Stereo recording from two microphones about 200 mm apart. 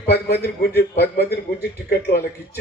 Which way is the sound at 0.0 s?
55° left (ahead or behind).